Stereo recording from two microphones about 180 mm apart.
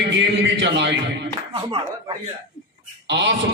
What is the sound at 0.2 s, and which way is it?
Speech, 75° right (ahead or behind).